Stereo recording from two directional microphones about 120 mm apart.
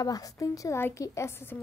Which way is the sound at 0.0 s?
30° left (ahead or behind).